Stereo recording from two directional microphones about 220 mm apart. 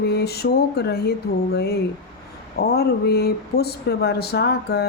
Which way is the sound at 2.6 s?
45° left (ahead or behind).